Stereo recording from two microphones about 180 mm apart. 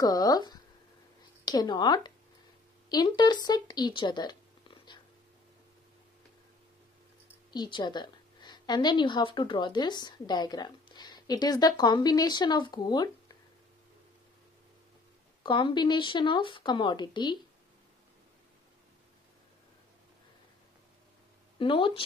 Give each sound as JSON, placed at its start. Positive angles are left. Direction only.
{"t": 0.0, "sound": "speech", "side_deg": 20}
{"t": 3.4, "sound": "whispering", "side_deg": 20}
{"t": 7.5, "sound": "a woman's voice", "side_deg": 25}
{"t": 15.4, "sound": "speech", "side_deg": 25}
{"t": 21.5, "sound": "speech", "side_deg": 30}